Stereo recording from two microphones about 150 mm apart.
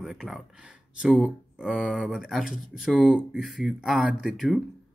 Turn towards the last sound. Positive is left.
turn(degrees=0)  # may be behind; listen again after turning